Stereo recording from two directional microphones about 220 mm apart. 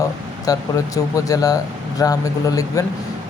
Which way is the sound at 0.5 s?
15° left (ahead or behind).